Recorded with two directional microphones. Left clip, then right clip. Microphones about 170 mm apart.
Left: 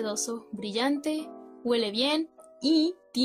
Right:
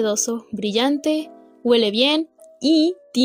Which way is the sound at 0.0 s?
30° right (ahead or behind).